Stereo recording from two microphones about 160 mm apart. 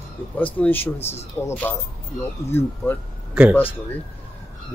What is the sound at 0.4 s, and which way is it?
Speech, 10° left (ahead or behind).